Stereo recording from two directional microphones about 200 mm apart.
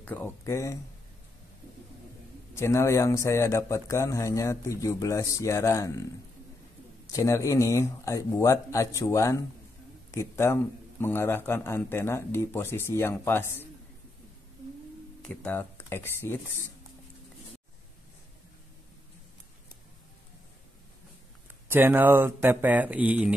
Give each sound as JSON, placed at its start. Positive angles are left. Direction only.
{"t": 0.0, "sound": "speech", "side_deg": 10}
{"t": 2.5, "sound": "speech", "side_deg": 15}
{"t": 7.1, "sound": "speech", "side_deg": 15}
{"t": 15.2, "sound": "speech", "side_deg": 10}
{"t": 21.6, "sound": "speech", "side_deg": -10}